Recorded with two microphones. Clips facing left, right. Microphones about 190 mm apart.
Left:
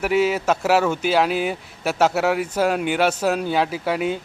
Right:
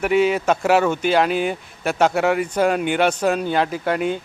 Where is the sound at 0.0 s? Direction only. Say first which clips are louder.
Right 2 dB; 5° left (ahead or behind).